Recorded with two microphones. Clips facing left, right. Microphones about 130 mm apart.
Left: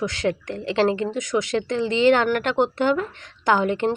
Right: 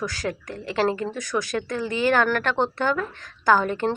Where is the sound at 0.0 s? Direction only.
25° left (ahead or behind).